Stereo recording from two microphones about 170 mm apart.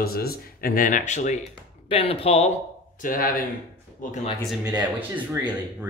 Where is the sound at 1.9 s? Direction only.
35° left (ahead or behind).